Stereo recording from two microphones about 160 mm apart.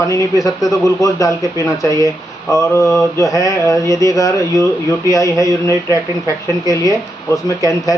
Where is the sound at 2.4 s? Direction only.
20° left (ahead or behind).